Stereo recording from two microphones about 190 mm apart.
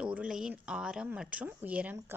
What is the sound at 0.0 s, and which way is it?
A woman's voice, 5° right (ahead or behind).